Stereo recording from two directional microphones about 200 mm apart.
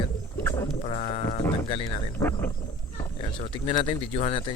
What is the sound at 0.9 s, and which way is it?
Speech, 30° left (ahead or behind).